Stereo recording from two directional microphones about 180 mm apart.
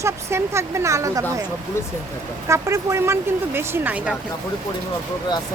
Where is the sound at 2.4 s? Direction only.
15° right (ahead or behind).